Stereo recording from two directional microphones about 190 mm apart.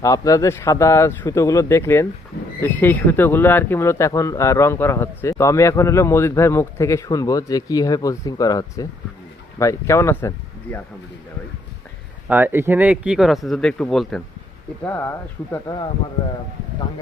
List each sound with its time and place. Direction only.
0.0 s speech: 15° left (ahead or behind)
12.3 s speech: 10° right (ahead or behind); by 15.9 s 20° left (ahead or behind)